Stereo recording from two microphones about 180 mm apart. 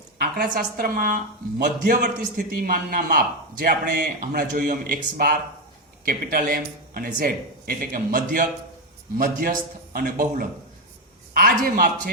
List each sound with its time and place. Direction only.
0.2 s a man's voice: 55° right (ahead or behind)